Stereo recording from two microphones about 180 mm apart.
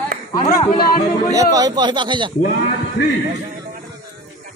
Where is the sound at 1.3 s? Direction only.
20° right (ahead or behind).